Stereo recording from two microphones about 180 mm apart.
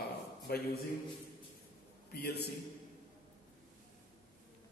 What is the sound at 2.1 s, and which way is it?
Speech, 65° left (ahead or behind).